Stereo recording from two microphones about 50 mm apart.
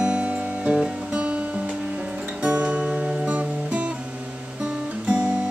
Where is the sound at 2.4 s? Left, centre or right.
Right.